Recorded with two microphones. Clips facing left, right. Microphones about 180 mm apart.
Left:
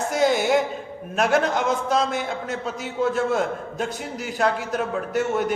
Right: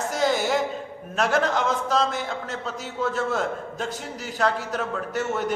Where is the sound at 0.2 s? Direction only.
15° left (ahead or behind).